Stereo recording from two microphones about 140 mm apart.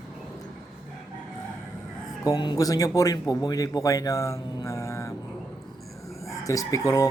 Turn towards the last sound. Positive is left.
turn(degrees=25)  # may be behind; listen again after turning